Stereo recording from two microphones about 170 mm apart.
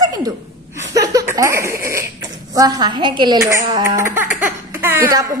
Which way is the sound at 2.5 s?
20° right (ahead or behind).